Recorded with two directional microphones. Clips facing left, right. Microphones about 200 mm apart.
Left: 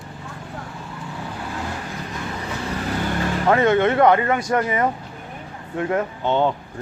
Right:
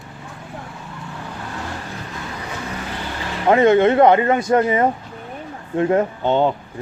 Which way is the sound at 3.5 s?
20° right (ahead or behind).